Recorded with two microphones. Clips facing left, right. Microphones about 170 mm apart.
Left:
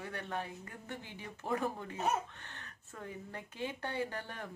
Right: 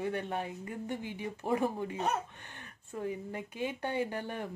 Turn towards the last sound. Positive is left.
turn(degrees=-15)  # may be behind; listen again after turning